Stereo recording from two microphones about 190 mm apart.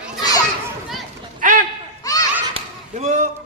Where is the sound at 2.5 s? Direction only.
35° right (ahead or behind).